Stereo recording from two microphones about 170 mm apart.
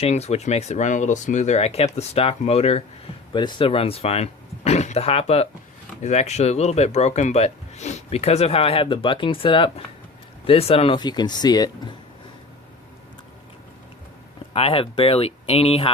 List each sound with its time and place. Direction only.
0.0 s speech: 40° left (ahead or behind)
3.3 s speech: 25° left (ahead or behind)
14.5 s speech: 35° left (ahead or behind)